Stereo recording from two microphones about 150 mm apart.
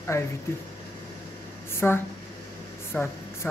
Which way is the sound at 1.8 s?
10° left (ahead or behind).